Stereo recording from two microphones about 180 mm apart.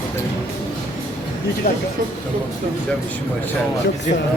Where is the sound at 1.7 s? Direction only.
55° left (ahead or behind).